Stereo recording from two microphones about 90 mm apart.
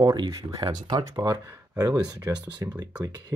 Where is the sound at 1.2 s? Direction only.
40° right (ahead or behind).